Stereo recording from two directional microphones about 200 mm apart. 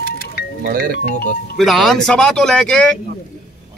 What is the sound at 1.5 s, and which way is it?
Speech, centre (ahead or behind).